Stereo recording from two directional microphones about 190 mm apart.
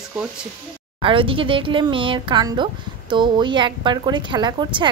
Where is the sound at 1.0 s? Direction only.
25° right (ahead or behind).